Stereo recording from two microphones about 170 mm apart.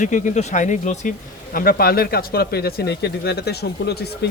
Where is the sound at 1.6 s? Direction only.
60° left (ahead or behind).